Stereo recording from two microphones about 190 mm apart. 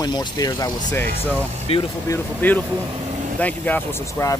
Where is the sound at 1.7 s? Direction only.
30° left (ahead or behind).